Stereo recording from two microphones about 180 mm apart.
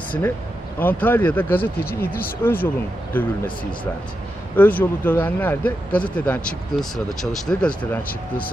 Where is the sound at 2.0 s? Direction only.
55° left (ahead or behind).